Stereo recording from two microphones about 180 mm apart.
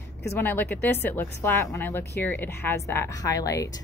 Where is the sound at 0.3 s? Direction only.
10° left (ahead or behind).